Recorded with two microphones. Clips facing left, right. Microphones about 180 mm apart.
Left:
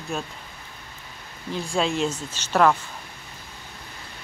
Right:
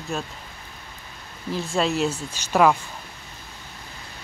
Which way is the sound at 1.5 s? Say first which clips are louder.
Right 1 dB; centre (ahead or behind).